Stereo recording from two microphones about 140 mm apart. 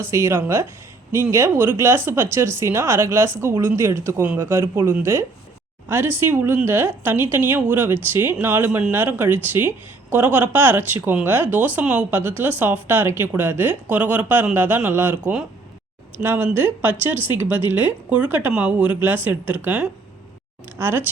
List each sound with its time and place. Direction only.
0.0 s a woman's voice: 20° right (ahead or behind)